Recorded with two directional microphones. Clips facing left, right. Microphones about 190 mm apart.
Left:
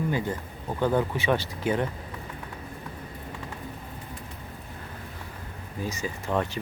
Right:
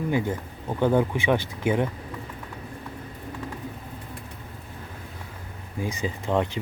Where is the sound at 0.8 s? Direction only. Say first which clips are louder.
Right 3 dB; 15° right (ahead or behind).